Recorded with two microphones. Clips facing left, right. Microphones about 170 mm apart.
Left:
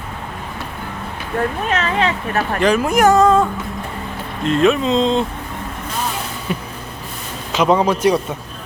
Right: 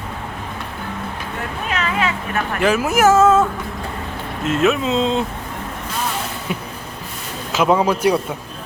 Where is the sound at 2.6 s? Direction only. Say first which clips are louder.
Left 1 dB; 5° right (ahead or behind).